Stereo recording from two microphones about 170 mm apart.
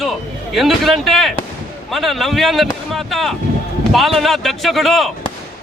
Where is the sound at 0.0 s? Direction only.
Centre (ahead or behind).